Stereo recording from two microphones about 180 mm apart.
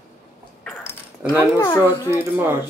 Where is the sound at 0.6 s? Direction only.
15° left (ahead or behind).